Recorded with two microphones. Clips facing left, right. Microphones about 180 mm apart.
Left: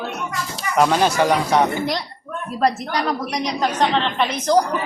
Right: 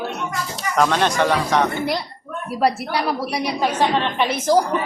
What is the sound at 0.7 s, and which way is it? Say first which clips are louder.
Speech: left 2 dB; 10° left (ahead or behind).